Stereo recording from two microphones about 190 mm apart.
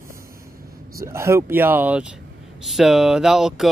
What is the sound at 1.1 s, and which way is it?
Speech, 15° right (ahead or behind).